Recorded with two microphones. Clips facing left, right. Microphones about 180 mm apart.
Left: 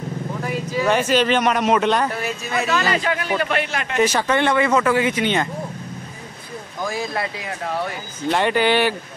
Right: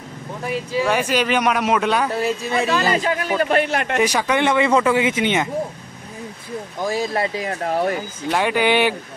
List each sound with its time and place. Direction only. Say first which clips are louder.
0.8 s speech: left 3 dB; 10° right (ahead or behind)
2.1 s a man's voice: right 4 dB; 30° right (ahead or behind); by 4.0 s 50° right (ahead or behind)
4.0 s speech: left 2 dB; 10° right (ahead or behind)
6.8 s speech: right 3 dB; 35° right (ahead or behind)
8.3 s speech: even; 5° right (ahead or behind)